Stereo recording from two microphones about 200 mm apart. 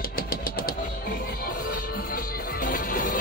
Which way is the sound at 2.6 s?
40° left (ahead or behind).